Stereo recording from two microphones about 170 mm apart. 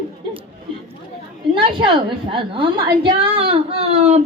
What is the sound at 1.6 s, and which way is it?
A woman's voice, 30° right (ahead or behind).